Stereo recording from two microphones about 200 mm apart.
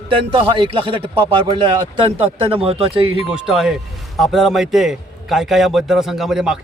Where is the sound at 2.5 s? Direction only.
30° right (ahead or behind).